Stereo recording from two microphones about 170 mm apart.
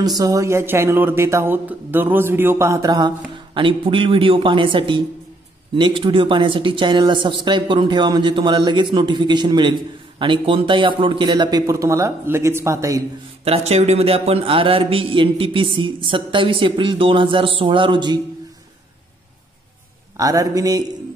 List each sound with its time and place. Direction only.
0.0 s a man's voice: 20° right (ahead or behind)
13.4 s a man's voice: 40° right (ahead or behind)
20.2 s speech: 20° right (ahead or behind)